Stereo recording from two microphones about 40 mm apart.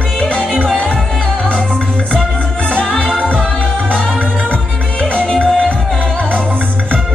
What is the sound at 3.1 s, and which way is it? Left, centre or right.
Music, left.